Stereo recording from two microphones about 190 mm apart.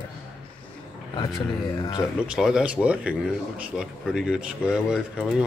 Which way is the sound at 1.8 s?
20° left (ahead or behind).